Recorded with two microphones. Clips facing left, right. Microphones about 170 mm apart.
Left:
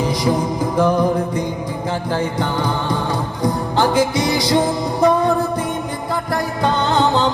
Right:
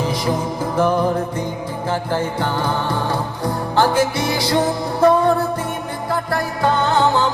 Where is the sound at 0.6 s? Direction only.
15° left (ahead or behind).